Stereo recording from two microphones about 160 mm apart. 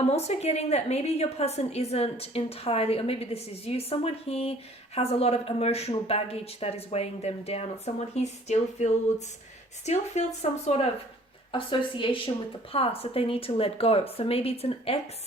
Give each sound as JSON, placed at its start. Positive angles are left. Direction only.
{"t": 0.1, "sound": "a woman's voice", "side_deg": 40}
{"t": 11.5, "sound": "a woman's voice", "side_deg": 30}